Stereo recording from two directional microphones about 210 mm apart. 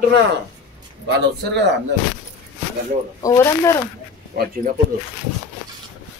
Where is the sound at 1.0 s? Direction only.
50° right (ahead or behind).